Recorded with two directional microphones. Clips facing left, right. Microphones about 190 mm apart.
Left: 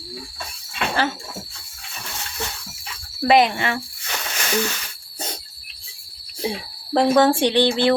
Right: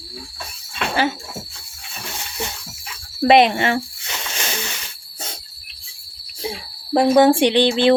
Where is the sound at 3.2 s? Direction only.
25° right (ahead or behind).